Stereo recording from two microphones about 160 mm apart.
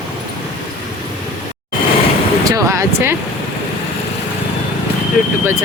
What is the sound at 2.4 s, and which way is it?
Speech, 20° right (ahead or behind).